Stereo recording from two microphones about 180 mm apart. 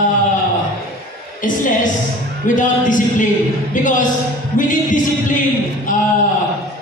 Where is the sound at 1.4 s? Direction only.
50° left (ahead or behind).